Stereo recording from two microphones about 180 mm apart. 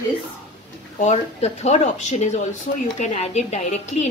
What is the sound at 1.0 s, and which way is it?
Speech, 40° left (ahead or behind).